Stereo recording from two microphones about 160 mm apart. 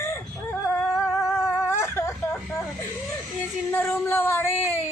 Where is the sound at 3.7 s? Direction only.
15° left (ahead or behind).